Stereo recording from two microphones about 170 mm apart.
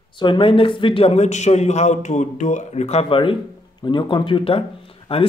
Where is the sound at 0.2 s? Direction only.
30° left (ahead or behind).